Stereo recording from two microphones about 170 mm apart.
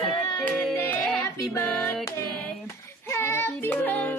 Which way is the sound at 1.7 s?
5° left (ahead or behind).